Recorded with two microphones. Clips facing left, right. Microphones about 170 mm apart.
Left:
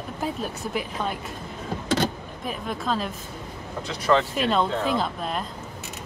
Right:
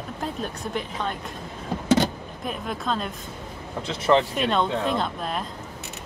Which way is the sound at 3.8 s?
20° right (ahead or behind).